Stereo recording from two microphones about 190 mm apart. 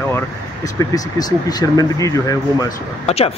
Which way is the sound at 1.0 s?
20° left (ahead or behind).